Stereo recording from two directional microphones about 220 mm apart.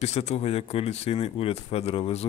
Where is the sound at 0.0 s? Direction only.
30° left (ahead or behind).